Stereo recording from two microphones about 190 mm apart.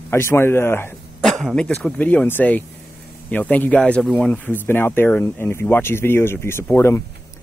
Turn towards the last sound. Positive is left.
turn(degrees=15)  # may be behind; listen again after turning